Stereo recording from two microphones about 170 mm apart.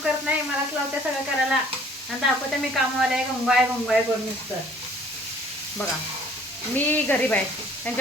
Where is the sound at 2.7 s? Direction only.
5° right (ahead or behind).